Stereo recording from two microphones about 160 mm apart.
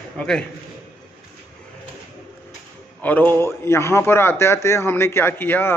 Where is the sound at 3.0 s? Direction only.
10° left (ahead or behind).